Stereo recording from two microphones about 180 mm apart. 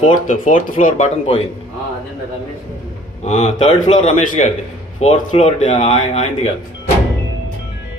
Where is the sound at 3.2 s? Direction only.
40° left (ahead or behind).